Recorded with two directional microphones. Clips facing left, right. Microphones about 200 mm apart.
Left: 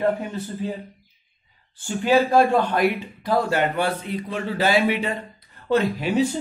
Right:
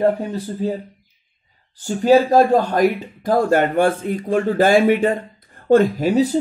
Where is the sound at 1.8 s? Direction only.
40° right (ahead or behind).